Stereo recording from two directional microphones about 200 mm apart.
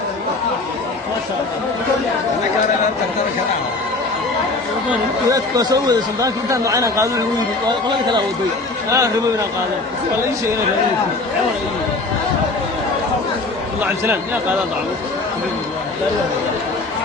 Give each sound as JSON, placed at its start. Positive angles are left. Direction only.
{"t": 5.3, "sound": "a man's voice", "side_deg": -15}
{"t": 8.9, "sound": "a man's voice", "side_deg": -15}
{"t": 13.8, "sound": "a man's voice", "side_deg": -10}